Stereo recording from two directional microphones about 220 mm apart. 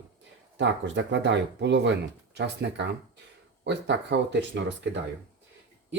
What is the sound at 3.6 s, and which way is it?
Speech, 50° right (ahead or behind).